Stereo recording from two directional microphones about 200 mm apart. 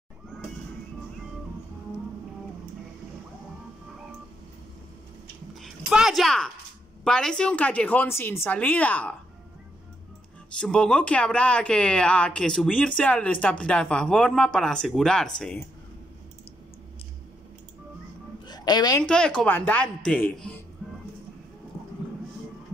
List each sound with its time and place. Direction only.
5.6 s music: 5° right (ahead or behind)
7.1 s speech: 5° left (ahead or behind)
10.6 s speech: 5° left (ahead or behind)
18.5 s a woman's voice: 20° left (ahead or behind)
19.0 s speech: 5° left (ahead or behind)